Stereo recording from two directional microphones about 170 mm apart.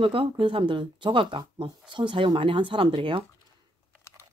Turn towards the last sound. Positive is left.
turn(degrees=-30)  # may be behind; listen again after turning